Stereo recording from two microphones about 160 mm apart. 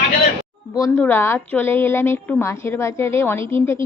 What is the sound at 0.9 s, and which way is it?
A woman's voice, 10° left (ahead or behind).